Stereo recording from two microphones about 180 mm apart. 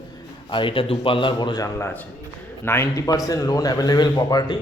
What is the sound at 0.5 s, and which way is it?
A man's voice, 30° left (ahead or behind).